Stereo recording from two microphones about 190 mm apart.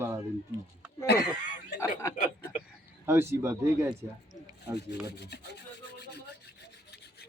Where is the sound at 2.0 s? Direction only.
15° left (ahead or behind).